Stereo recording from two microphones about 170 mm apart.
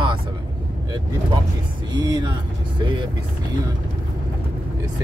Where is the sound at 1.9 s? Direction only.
25° right (ahead or behind).